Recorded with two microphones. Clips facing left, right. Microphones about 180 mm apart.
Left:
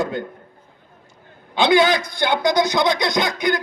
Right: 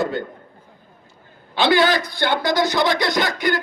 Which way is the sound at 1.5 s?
20° left (ahead or behind).